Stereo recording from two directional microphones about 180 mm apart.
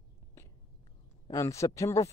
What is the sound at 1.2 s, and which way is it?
Speech, 20° left (ahead or behind).